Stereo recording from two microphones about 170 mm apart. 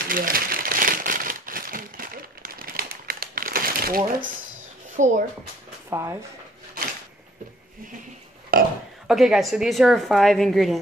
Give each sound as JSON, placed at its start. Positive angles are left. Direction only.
{"t": 0.1, "sound": "crumpling", "side_deg": -55}
{"t": 4.9, "sound": "speech", "side_deg": -50}
{"t": 5.9, "sound": "speech", "side_deg": -15}
{"t": 8.5, "sound": "burping", "side_deg": -60}
{"t": 9.0, "sound": "a woman's voice", "side_deg": -5}